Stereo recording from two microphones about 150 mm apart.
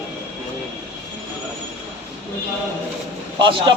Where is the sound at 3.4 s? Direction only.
30° right (ahead or behind).